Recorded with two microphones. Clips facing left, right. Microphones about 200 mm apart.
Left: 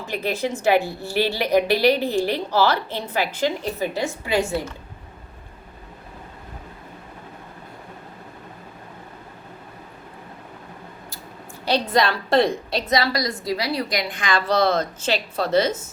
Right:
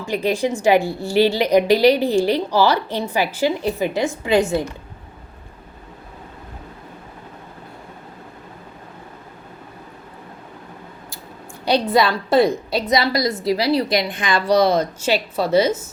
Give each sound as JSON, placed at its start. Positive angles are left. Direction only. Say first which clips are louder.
{"t": 0.0, "sound": "a woman's voice", "louder": "right 5 dB", "side_deg": -15}
{"t": 11.6, "sound": "a woman's voice", "louder": "right 3 dB", "side_deg": -10}
{"t": 12.9, "sound": "a woman's voice", "louder": "right 3 dB", "side_deg": -25}